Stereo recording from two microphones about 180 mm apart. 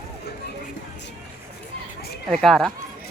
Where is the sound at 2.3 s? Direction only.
Centre (ahead or behind).